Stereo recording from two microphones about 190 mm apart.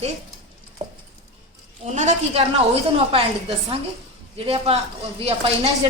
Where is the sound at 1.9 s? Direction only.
40° right (ahead or behind).